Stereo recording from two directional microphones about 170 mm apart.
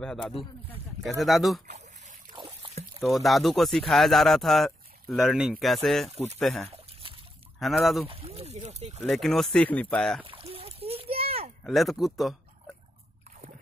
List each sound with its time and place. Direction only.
0.0 s speech: 5° left (ahead or behind)
2.3 s trickle: 35° right (ahead or behind)
3.1 s speech: centre (ahead or behind)
8.1 s speech: 35° right (ahead or behind)
9.0 s speech: centre (ahead or behind)
10.2 s splash: 35° right (ahead or behind)
11.6 s speech: centre (ahead or behind)